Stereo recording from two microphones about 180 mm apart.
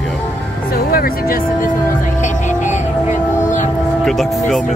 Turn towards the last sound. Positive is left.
turn(degrees=0)  # may be behind; listen again after turning